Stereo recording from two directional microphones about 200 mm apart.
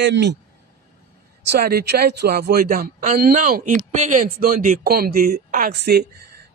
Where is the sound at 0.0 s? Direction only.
60° right (ahead or behind).